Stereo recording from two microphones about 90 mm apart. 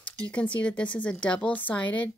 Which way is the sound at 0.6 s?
15° left (ahead or behind).